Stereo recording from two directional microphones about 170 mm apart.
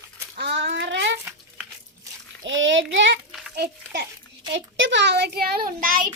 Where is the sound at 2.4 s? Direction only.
90° right.